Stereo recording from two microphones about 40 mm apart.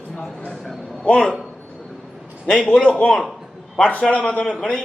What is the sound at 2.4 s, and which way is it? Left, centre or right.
Speech, centre.